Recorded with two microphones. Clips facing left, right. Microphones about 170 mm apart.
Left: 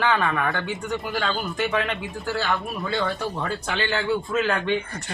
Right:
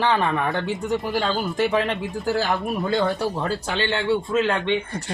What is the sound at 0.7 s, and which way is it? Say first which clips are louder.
Speech: right 4 dB; 5° right (ahead or behind).